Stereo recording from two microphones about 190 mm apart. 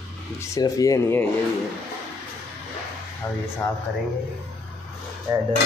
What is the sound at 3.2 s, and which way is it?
Speech, 15° left (ahead or behind).